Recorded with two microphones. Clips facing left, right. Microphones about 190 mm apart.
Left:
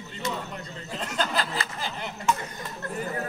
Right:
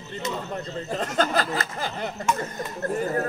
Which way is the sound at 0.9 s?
45° right (ahead or behind).